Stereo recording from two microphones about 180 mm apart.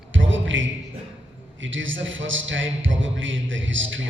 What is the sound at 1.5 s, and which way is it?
A man's voice, 90° right.